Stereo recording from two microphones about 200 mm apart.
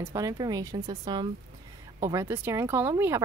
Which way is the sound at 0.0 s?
15° right (ahead or behind).